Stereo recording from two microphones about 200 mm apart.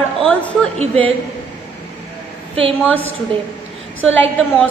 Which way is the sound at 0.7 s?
25° right (ahead or behind).